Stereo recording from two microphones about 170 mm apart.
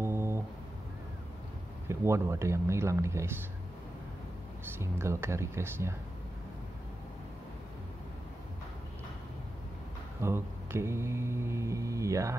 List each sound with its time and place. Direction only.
0.0 s a sound: 15° right (ahead or behind)
1.9 s speech: 15° right (ahead or behind)
4.7 s speech: 15° right (ahead or behind)
10.2 s mantra: 15° right (ahead or behind)